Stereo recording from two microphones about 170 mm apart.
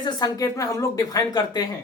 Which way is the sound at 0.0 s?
20° left (ahead or behind).